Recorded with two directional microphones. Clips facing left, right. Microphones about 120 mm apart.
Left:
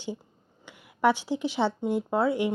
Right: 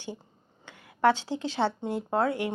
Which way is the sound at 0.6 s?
15° left (ahead or behind).